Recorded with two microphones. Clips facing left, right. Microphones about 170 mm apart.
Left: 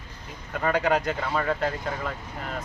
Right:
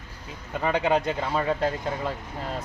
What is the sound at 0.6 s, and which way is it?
Speech, 25° right (ahead or behind).